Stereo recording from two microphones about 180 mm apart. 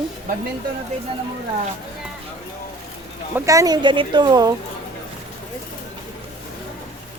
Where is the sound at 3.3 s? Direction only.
20° right (ahead or behind).